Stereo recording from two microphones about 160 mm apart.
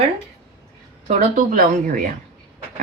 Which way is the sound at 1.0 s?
55° right (ahead or behind).